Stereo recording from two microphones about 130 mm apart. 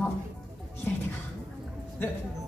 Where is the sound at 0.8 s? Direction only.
15° left (ahead or behind).